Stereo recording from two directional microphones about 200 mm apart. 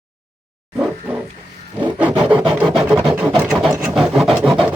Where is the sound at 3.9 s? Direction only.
Centre (ahead or behind).